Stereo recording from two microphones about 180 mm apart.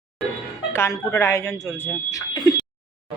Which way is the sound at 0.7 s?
15° left (ahead or behind).